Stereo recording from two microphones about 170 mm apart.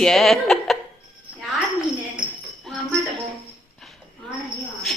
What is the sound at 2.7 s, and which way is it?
Jingle bell, centre (ahead or behind).